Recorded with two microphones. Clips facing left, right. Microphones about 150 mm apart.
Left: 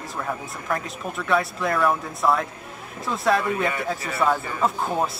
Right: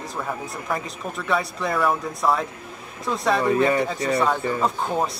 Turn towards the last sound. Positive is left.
turn(degrees=0)  # may be behind; listen again after turning